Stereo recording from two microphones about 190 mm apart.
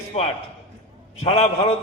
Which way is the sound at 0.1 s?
35° left (ahead or behind).